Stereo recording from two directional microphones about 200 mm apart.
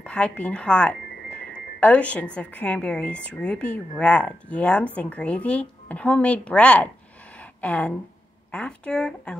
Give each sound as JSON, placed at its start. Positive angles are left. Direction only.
{"t": 0.0, "sound": "speech", "side_deg": 5}